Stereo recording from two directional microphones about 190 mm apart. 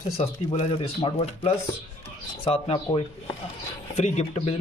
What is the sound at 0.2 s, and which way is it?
Speech, 30° left (ahead or behind).